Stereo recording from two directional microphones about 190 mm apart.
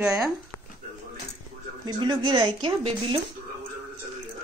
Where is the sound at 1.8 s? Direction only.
25° right (ahead or behind).